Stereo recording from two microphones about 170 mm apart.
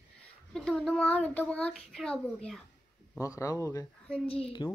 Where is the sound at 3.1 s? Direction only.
20° left (ahead or behind).